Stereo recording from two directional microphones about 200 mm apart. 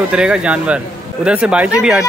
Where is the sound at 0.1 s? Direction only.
5° right (ahead or behind).